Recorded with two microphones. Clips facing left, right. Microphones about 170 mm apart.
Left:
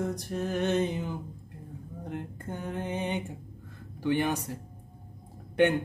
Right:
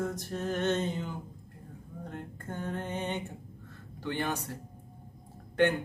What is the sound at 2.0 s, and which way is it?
Speech, 15° left (ahead or behind).